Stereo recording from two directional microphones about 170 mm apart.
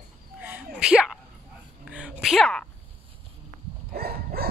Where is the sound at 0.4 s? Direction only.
5° right (ahead or behind).